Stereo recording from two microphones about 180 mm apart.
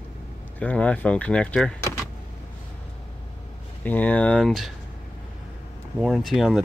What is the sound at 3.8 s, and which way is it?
Speech, 10° left (ahead or behind).